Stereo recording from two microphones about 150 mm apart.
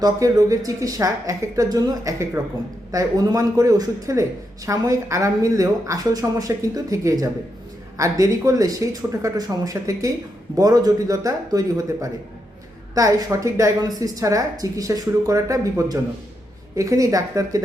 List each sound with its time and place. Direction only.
0.0 s speech: 25° right (ahead or behind)
12.9 s speech: 25° right (ahead or behind)